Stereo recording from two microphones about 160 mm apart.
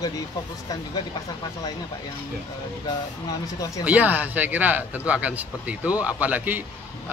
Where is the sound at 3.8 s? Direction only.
10° right (ahead or behind).